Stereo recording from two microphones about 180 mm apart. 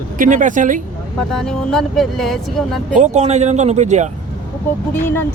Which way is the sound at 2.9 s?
40° right (ahead or behind).